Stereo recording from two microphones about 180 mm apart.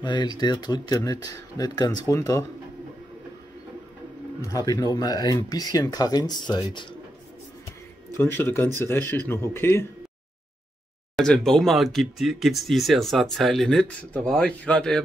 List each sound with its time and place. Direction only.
0.0 s speech: 25° left (ahead or behind)
4.4 s speech: 20° left (ahead or behind)
8.2 s speech: 10° left (ahead or behind)
11.1 s speech: 5° left (ahead or behind)